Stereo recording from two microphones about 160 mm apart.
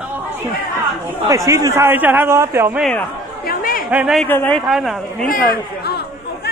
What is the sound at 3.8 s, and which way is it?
Speech, 5° right (ahead or behind).